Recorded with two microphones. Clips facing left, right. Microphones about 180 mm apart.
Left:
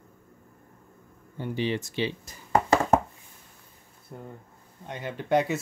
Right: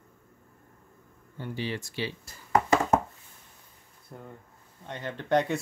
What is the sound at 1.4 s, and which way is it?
Speech, 20° left (ahead or behind).